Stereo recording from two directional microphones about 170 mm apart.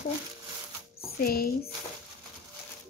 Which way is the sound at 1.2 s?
60° left (ahead or behind).